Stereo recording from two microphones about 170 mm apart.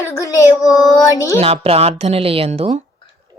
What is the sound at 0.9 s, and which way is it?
Speech, 20° left (ahead or behind).